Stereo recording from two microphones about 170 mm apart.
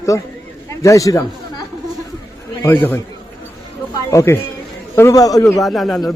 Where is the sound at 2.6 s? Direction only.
15° left (ahead or behind).